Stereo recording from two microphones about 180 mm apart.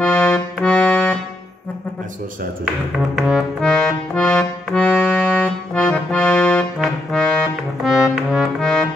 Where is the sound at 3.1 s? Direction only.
Centre (ahead or behind).